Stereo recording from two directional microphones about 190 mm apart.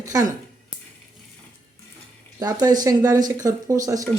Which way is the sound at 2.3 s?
20° right (ahead or behind).